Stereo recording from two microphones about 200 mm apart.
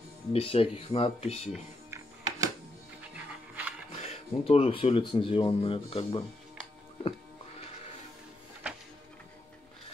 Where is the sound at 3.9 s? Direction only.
30° left (ahead or behind).